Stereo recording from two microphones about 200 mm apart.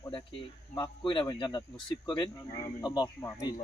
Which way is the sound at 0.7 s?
20° left (ahead or behind).